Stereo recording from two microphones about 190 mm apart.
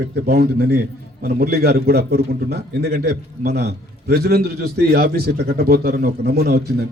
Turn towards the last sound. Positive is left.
turn(degrees=-55)  # may be behind; listen again after turning